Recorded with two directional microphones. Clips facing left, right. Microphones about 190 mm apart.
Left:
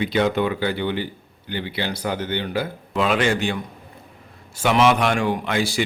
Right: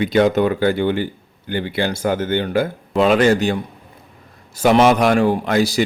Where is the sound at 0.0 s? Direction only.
45° right (ahead or behind).